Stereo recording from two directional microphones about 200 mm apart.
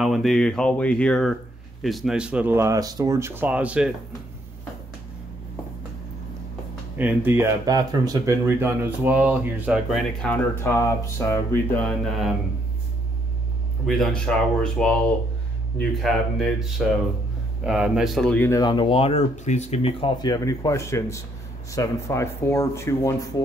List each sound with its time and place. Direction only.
0.0 s speech: centre (ahead or behind)
7.0 s speech: 10° right (ahead or behind)
13.8 s speech: centre (ahead or behind)
18.6 s speech: 25° left (ahead or behind)